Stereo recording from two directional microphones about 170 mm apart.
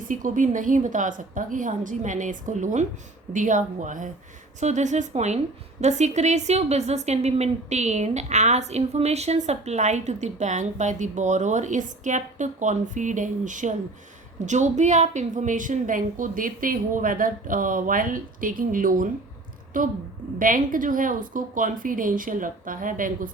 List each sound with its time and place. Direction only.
0.1 s a woman's voice: 50° right (ahead or behind)